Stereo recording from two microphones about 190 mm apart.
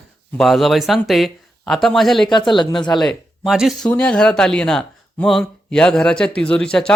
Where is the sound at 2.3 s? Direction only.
25° left (ahead or behind).